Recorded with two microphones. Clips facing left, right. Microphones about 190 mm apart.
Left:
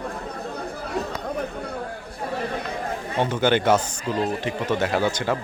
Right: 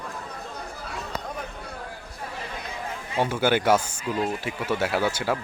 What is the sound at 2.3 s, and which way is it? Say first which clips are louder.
Chatter: left 10 dB; 55° left (ahead or behind).